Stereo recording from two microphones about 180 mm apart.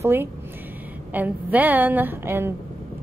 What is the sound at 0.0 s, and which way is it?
A woman's voice, 15° right (ahead or behind).